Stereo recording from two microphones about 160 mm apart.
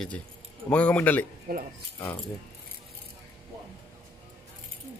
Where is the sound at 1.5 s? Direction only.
70° right (ahead or behind).